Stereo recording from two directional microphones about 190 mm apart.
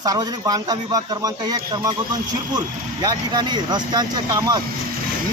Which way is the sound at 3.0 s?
20° right (ahead or behind).